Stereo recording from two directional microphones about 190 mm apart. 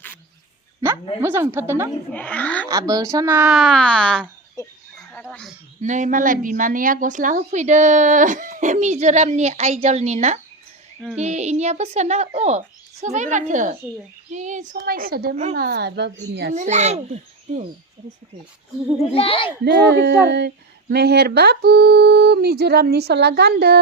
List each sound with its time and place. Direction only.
1.2 s a child's voice: 10° right (ahead or behind)
2.1 s speech: 10° left (ahead or behind)
2.6 s a child's voice: 20° right (ahead or behind)
3.5 s speech: centre (ahead or behind)
4.6 s a sound: 15° left (ahead or behind)
5.3 s speech: 5° left (ahead or behind)
5.8 s a woman's voice: 40° right (ahead or behind); by 16.6 s 60° right (ahead or behind)
16.6 s a woman's voice: 35° right (ahead or behind)
19.1 s a child's voice: 30° left (ahead or behind)
19.6 s speech: 65° right (ahead or behind)